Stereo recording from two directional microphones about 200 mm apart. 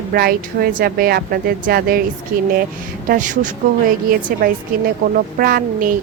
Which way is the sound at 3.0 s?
40° right (ahead or behind).